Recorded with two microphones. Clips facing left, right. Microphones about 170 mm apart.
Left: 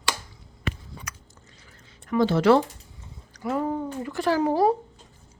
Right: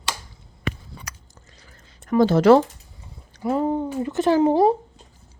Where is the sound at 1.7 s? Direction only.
40° right (ahead or behind).